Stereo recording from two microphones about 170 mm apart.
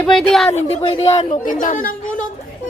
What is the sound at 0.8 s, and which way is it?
A woman's voice, 35° left (ahead or behind).